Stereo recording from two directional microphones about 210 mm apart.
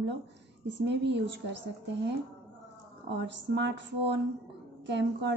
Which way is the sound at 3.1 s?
55° right (ahead or behind).